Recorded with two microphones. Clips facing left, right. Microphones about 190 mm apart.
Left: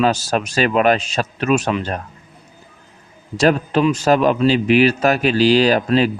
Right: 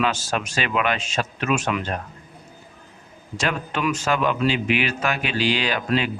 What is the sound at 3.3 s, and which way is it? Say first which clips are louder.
Speech: left 10 dB; 40° left (ahead or behind).